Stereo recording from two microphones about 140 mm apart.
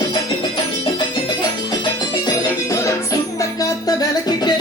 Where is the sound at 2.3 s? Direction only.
20° left (ahead or behind).